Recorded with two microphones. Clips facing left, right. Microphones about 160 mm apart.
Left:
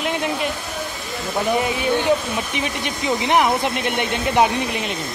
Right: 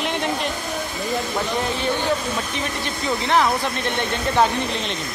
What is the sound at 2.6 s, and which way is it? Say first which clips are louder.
Speech: left 2 dB; 15° left (ahead or behind).